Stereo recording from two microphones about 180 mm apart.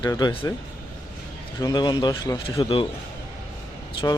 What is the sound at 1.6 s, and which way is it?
Speech, 25° left (ahead or behind).